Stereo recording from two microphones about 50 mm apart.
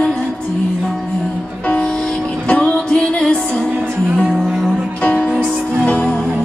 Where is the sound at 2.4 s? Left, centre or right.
Left.